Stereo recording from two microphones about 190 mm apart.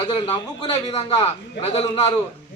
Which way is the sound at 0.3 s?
25° left (ahead or behind).